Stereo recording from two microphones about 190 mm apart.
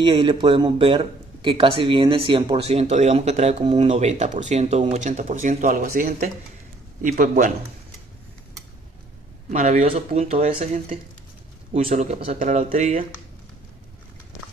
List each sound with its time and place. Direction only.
0.0 s speech: 25° right (ahead or behind); by 7.5 s 45° right (ahead or behind)
9.5 s speech: 40° right (ahead or behind)